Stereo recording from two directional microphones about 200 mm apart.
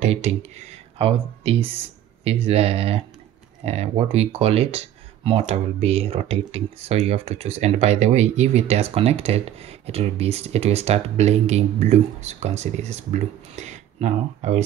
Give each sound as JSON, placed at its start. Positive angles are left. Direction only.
{"t": 0.0, "sound": "speech", "side_deg": -35}